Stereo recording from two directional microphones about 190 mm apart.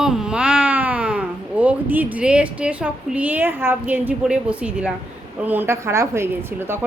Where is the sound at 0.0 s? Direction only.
5° right (ahead or behind).